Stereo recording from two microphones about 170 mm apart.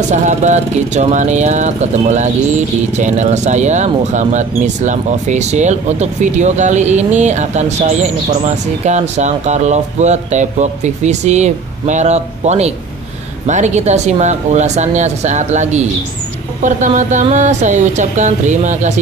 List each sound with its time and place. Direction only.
0.1 s speech: 45° right (ahead or behind)